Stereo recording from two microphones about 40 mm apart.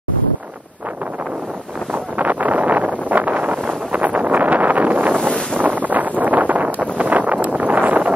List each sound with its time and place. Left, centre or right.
2.1 s wind noise: right